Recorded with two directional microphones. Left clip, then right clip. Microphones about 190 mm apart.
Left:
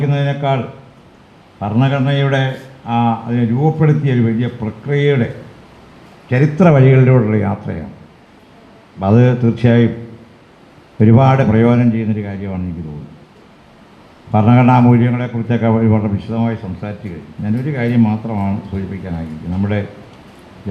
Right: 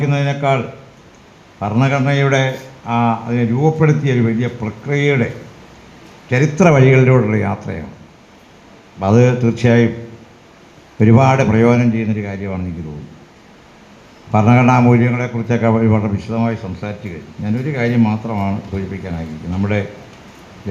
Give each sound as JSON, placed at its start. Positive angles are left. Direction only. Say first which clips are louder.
{"t": 0.0, "sound": "speech", "louder": "right 1 dB", "side_deg": 15}
{"t": 1.6, "sound": "a man's voice", "louder": "right 1 dB", "side_deg": 15}
{"t": 6.3, "sound": "speech", "louder": "even", "side_deg": 30}
{"t": 9.0, "sound": "speech", "louder": "right 1 dB", "side_deg": 30}
{"t": 11.0, "sound": "a man's voice", "louder": "even", "side_deg": 20}
{"t": 14.3, "sound": "a man's voice", "louder": "even", "side_deg": 15}